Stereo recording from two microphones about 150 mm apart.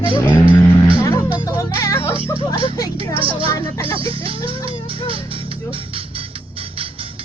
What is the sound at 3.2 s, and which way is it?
Speech, 35° right (ahead or behind).